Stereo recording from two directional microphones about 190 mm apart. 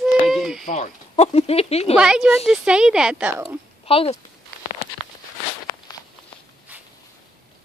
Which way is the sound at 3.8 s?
30° left (ahead or behind).